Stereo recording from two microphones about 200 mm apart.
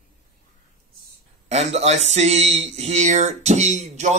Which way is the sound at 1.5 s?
30° right (ahead or behind).